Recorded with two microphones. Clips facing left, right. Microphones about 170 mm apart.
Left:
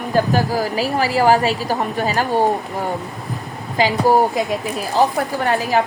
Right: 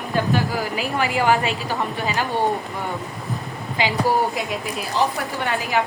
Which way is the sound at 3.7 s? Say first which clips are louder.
Left 5 dB; 40° left (ahead or behind).